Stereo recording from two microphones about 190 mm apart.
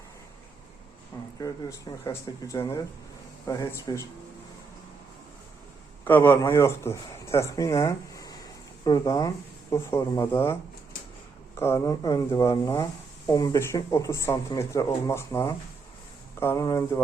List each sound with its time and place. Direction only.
1.4 s speech: 20° left (ahead or behind)
6.1 s speech: 10° left (ahead or behind)